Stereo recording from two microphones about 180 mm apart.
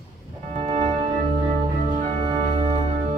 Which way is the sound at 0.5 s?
40° right (ahead or behind).